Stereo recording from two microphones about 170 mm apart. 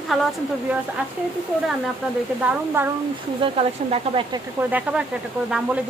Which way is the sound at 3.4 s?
35° right (ahead or behind).